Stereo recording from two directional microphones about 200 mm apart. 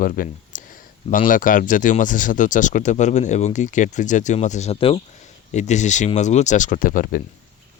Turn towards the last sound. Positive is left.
turn(degrees=45)  # may be behind; listen again after turning